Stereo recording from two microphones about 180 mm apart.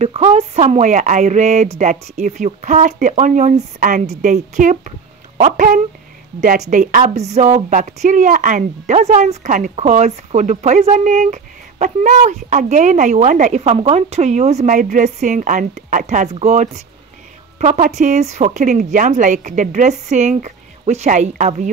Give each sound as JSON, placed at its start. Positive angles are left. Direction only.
{"t": 0.0, "sound": "a woman's voice", "side_deg": -35}